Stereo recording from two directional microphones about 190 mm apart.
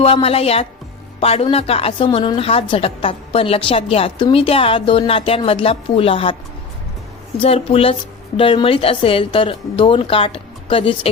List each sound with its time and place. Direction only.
0.0 s a woman's voice: 30° left (ahead or behind)
7.4 s a woman's voice: 30° left (ahead or behind)